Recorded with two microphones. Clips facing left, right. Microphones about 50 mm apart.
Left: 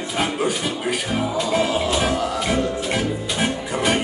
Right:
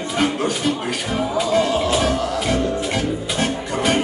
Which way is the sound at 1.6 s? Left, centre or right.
Centre.